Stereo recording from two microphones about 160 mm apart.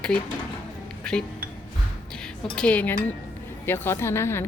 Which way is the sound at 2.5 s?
10° left (ahead or behind).